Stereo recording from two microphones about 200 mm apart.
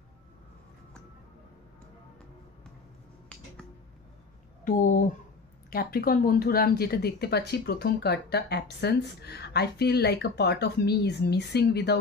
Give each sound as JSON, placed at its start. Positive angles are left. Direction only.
{"t": 4.6, "sound": "speech", "side_deg": 40}